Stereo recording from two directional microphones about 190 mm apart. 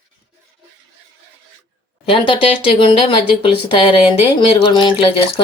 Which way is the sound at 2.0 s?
25° left (ahead or behind).